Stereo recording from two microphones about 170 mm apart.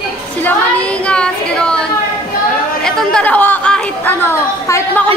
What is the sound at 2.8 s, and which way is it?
Chatter, 5° left (ahead or behind).